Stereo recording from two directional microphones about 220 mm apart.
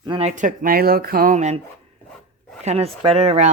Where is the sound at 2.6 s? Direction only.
25° right (ahead or behind).